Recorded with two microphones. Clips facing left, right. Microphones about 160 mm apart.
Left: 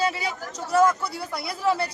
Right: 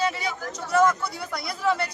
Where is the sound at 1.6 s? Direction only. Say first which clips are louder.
Left 1 dB; 35° left (ahead or behind).